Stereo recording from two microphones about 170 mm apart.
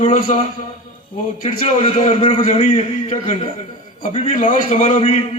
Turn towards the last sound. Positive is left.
turn(degrees=45)  # may be behind; listen again after turning